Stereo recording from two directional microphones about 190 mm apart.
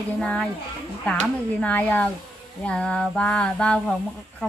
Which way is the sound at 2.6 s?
5° left (ahead or behind).